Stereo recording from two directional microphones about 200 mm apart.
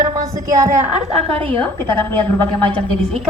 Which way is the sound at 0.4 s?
15° right (ahead or behind).